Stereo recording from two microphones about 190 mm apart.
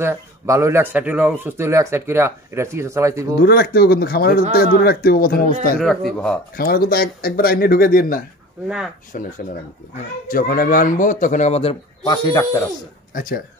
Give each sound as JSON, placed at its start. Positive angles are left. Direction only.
{"t": 0.0, "sound": "speech", "side_deg": -15}
{"t": 3.3, "sound": "speech", "side_deg": 55}
{"t": 5.8, "sound": "speech", "side_deg": 0}
{"t": 6.5, "sound": "speech", "side_deg": 50}
{"t": 8.6, "sound": "speech", "side_deg": -5}
{"t": 9.1, "sound": "a man's voice", "side_deg": 45}
{"t": 13.1, "sound": "speech", "side_deg": 45}